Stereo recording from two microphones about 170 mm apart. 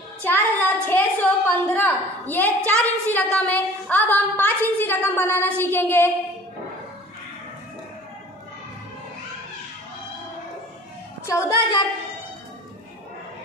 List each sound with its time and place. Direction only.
0.2 s a sound: 10° left (ahead or behind)
3.3 s a woman's voice: 10° left (ahead or behind)
11.2 s a woman's voice: 20° left (ahead or behind)